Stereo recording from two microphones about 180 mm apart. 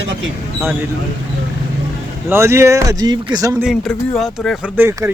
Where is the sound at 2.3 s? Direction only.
15° right (ahead or behind).